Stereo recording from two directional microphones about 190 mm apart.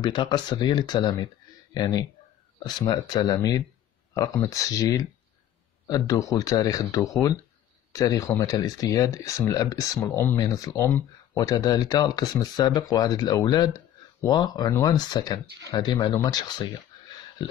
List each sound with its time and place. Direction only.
0.0 s a man's voice: 25° left (ahead or behind)